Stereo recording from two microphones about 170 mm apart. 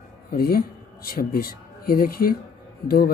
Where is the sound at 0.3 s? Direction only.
60° left (ahead or behind).